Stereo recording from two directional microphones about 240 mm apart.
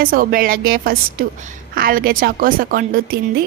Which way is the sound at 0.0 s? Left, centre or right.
Right.